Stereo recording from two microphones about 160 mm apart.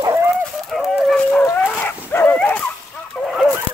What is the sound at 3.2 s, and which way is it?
Fowl, centre (ahead or behind).